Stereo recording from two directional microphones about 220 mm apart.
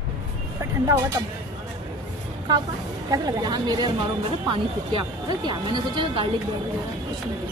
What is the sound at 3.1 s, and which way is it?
Speech, 20° right (ahead or behind).